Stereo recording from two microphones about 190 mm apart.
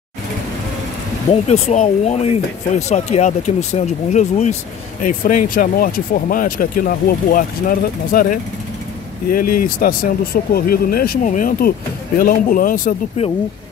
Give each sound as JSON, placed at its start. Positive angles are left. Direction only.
{"t": 1.3, "sound": "speech", "side_deg": 35}